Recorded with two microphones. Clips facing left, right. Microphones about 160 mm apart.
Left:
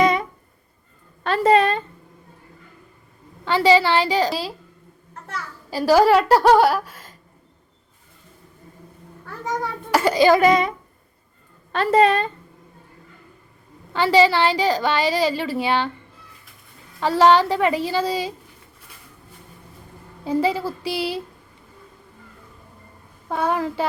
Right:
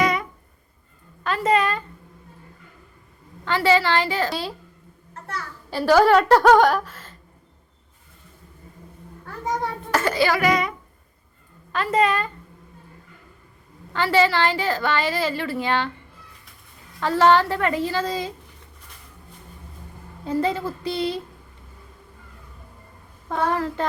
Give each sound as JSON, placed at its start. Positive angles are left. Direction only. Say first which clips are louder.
{"t": 0.0, "sound": "music", "louder": "left 4 dB", "side_deg": 25}
{"t": 1.2, "sound": "a woman's voice", "louder": "left 4 dB", "side_deg": 30}
{"t": 3.4, "sound": "a woman's voice", "louder": "left 3 dB", "side_deg": 15}
{"t": 5.9, "sound": "a woman's voice", "louder": "left 1 dB", "side_deg": 10}
{"t": 6.3, "sound": "a sound", "louder": "even", "side_deg": 5}
{"t": 9.9, "sound": "a child's voice", "louder": "left 6 dB", "side_deg": 15}
{"t": 13.9, "sound": "a woman's voice", "louder": "left 3 dB", "side_deg": 15}
{"t": 17.0, "sound": "a woman's voice", "louder": "left 2 dB", "side_deg": 15}
{"t": 20.2, "sound": "a woman's voice", "louder": "left 2 dB", "side_deg": 10}
{"t": 23.3, "sound": "a woman's voice", "louder": "left 1 dB", "side_deg": 10}